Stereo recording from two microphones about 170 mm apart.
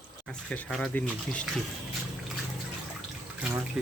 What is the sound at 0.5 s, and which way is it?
Speech, 5° left (ahead or behind).